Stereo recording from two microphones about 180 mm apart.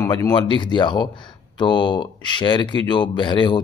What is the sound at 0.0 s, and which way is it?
Speech, 20° left (ahead or behind).